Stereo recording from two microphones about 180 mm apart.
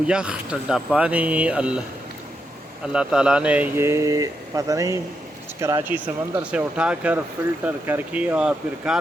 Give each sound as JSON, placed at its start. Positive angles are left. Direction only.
{"t": 0.1, "sound": "speech", "side_deg": -5}
{"t": 2.8, "sound": "speech", "side_deg": -5}